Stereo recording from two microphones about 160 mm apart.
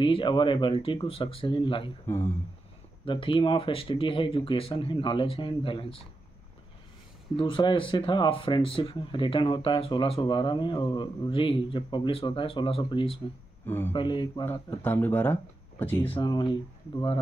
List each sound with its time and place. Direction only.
0.0 s speech: 30° left (ahead or behind)
2.0 s speech: 15° left (ahead or behind)
3.1 s speech: 30° left (ahead or behind)
7.3 s speech: 35° left (ahead or behind)
13.7 s speech: 15° left (ahead or behind)
13.9 s speech: 30° left (ahead or behind)
14.4 s speech: 10° left (ahead or behind)
16.1 s speech: 30° left (ahead or behind)